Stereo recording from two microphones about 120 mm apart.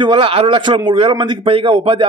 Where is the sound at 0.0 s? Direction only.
45° right (ahead or behind).